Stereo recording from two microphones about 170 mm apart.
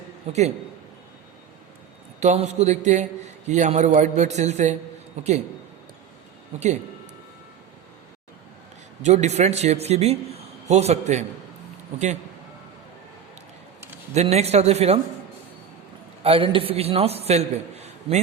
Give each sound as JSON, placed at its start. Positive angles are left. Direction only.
{"t": 0.3, "sound": "a man's voice", "side_deg": -40}
{"t": 2.2, "sound": "a man's voice", "side_deg": -40}
{"t": 9.0, "sound": "a man's voice", "side_deg": -40}
{"t": 14.1, "sound": "a man's voice", "side_deg": -40}
{"t": 16.2, "sound": "a man's voice", "side_deg": -30}